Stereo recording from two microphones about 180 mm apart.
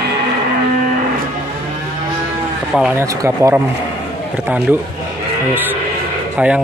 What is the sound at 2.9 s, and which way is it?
Speech, 15° right (ahead or behind).